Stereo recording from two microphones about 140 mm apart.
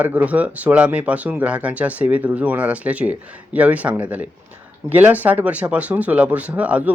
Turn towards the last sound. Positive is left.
turn(degrees=-10)  # may be behind; listen again after turning